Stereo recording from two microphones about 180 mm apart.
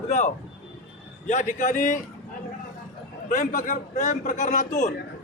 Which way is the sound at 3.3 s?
45° left (ahead or behind).